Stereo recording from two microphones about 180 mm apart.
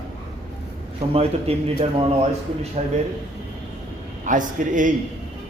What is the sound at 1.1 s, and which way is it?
A man's voice, 30° right (ahead or behind).